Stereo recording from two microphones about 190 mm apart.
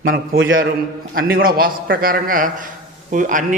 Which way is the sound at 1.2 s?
50° right (ahead or behind).